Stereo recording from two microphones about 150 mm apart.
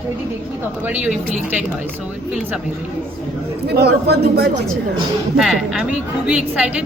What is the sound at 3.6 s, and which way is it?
Speech, 90° right.